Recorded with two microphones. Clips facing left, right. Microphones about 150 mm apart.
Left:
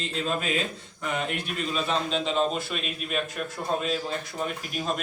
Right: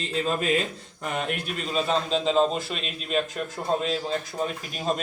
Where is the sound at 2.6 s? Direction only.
25° right (ahead or behind).